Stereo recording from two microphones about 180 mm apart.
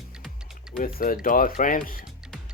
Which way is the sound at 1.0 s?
50° left (ahead or behind).